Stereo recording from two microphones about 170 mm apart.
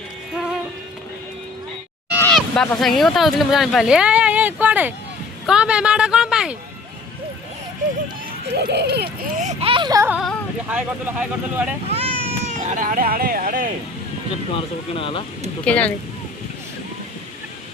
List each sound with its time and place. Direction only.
2.3 s a woman's voice: centre (ahead or behind)
8.5 s speech: 80° right
9.3 s speech: 45° right (ahead or behind); by 10.1 s 25° right (ahead or behind)
10.1 s speech: 5° right (ahead or behind)
11.9 s baby cry: 35° right (ahead or behind)
12.5 s speech: 50° right (ahead or behind)
14.5 s speech: 30° left (ahead or behind)
15.6 s speech: 10° left (ahead or behind)